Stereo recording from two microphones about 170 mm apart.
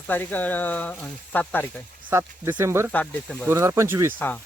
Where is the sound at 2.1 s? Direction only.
15° right (ahead or behind).